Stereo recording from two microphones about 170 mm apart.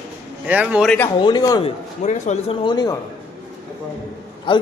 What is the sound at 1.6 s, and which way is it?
Speech, 45° left (ahead or behind).